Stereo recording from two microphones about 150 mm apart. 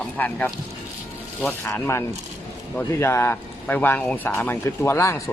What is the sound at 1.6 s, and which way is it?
Speech, 15° left (ahead or behind).